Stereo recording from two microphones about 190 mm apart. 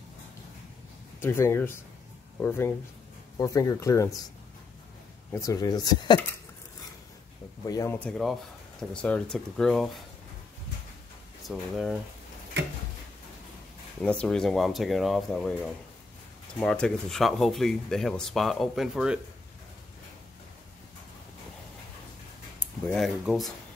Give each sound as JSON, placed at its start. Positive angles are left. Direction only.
{"t": 1.2, "sound": "speech", "side_deg": 15}
{"t": 5.3, "sound": "speech", "side_deg": 15}
{"t": 7.6, "sound": "speech", "side_deg": 20}
{"t": 8.0, "sound": "speech", "side_deg": 0}
{"t": 11.4, "sound": "speech", "side_deg": 0}
{"t": 14.0, "sound": "speech", "side_deg": 5}
{"t": 22.6, "sound": "speech", "side_deg": 5}